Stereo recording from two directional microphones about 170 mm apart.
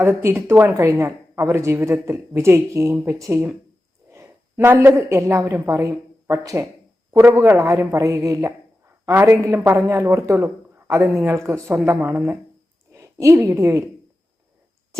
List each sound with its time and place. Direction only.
0.0 s a woman's voice: 15° right (ahead or behind)